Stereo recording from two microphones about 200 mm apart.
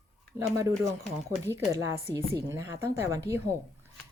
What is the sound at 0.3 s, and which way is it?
A woman's voice, 15° right (ahead or behind).